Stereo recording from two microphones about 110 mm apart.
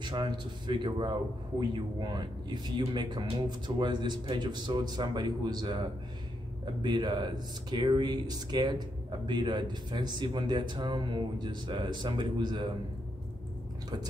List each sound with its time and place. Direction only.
0.0 s a man's voice: 45° right (ahead or behind)